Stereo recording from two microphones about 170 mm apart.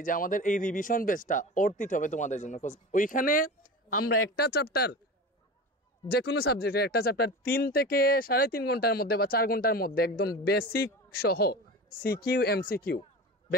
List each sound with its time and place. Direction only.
0.0 s speech: 55° left (ahead or behind)
4.2 s speech: 70° left (ahead or behind)
6.0 s a man's voice: 70° left (ahead or behind)